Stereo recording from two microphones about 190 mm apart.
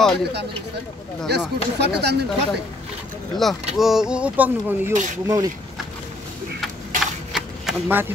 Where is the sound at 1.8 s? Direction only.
60° right (ahead or behind).